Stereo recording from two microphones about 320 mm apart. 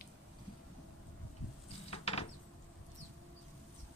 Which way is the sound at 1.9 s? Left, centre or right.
Centre.